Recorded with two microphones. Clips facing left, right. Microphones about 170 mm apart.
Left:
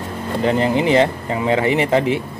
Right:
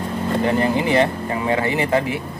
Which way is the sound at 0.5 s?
20° left (ahead or behind).